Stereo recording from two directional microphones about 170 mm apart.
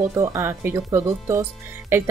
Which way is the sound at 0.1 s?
20° right (ahead or behind).